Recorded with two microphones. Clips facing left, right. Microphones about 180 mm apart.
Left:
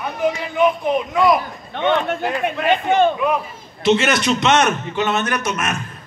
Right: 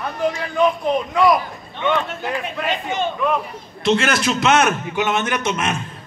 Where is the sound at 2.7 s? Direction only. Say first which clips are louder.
Left 8 dB; 55° left (ahead or behind).